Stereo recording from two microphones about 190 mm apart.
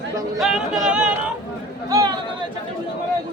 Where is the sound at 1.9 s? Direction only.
20° right (ahead or behind).